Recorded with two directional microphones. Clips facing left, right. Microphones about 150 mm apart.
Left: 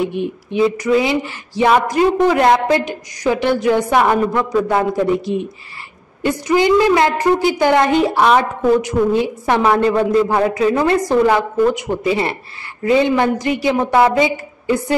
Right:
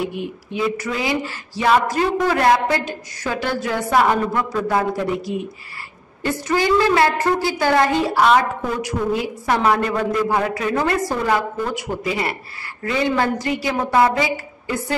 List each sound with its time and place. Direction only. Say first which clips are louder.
0.0 s speech: left 5 dB; 25° left (ahead or behind)